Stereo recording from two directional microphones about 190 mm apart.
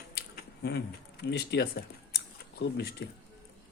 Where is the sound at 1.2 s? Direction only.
60° left (ahead or behind).